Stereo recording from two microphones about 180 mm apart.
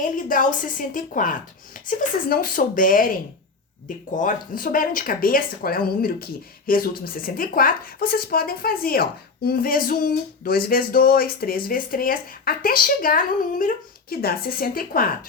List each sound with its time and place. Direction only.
0.0 s a woman's voice: 50° left (ahead or behind)